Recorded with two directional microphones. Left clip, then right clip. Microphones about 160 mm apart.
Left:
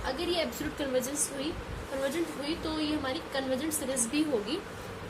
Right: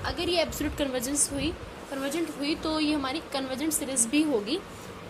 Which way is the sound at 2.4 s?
60° right (ahead or behind).